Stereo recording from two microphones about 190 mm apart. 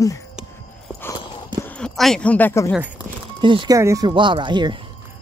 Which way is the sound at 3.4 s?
25° right (ahead or behind).